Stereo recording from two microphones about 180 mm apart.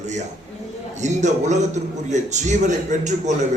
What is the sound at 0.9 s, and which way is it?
A man's voice, 40° right (ahead or behind).